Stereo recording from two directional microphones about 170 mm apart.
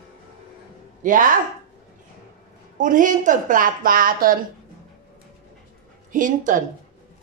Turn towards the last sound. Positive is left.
turn(degrees=-50)  # may be behind; listen again after turning